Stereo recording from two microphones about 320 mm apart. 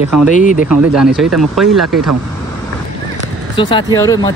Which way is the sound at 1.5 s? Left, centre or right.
Centre.